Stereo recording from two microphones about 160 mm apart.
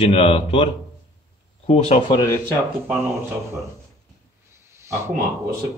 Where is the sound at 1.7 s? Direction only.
35° left (ahead or behind).